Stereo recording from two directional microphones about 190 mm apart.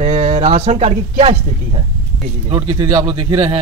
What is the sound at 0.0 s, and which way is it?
A man's voice, 35° right (ahead or behind).